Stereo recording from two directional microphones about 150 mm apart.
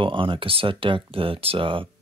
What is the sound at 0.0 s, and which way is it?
Speech, 35° right (ahead or behind).